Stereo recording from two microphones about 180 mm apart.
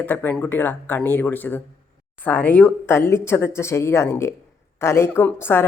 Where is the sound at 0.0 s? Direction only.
10° left (ahead or behind).